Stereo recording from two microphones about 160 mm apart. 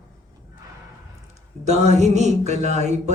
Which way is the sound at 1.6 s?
45° right (ahead or behind).